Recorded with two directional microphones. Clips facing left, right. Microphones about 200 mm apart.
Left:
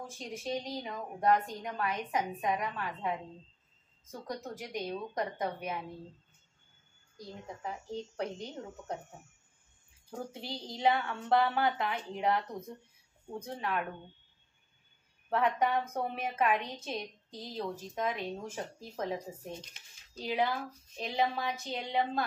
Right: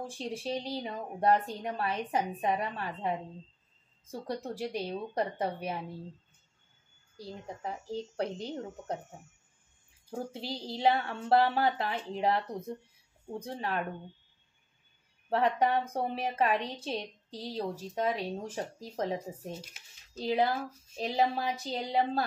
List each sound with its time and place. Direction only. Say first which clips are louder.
0.0 s a woman's voice: right 4 dB; 30° right (ahead or behind)
7.2 s a woman's voice: right 3 dB; 35° right (ahead or behind)
10.3 s a woman's voice: right 4 dB; 35° right (ahead or behind)
15.2 s a woman's voice: right 2 dB; 30° right (ahead or behind)
19.7 s speech: right 1 dB; 5° right (ahead or behind)
20.2 s a woman's voice: right 3 dB; 40° right (ahead or behind)